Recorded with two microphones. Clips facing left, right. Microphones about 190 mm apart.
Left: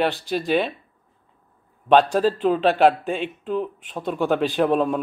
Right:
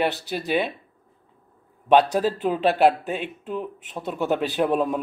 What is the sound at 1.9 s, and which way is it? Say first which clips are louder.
Speech: left 1 dB; 10° right (ahead or behind).